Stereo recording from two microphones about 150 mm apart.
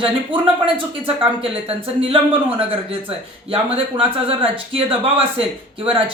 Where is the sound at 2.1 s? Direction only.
40° right (ahead or behind).